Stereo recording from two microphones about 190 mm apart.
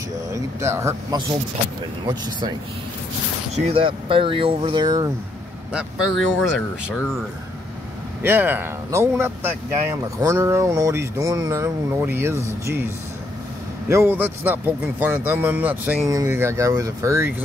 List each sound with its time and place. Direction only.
0.3 s speech: 15° right (ahead or behind)
3.5 s speech: 30° right (ahead or behind)
5.7 s speech: 5° right (ahead or behind)
8.2 s speech: 10° right (ahead or behind)
13.8 s speech: 10° right (ahead or behind)